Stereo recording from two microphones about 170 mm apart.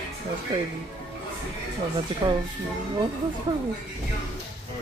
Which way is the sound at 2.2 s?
30° right (ahead or behind).